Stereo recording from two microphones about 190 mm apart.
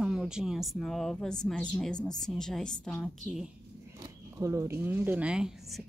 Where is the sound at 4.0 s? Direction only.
15° right (ahead or behind).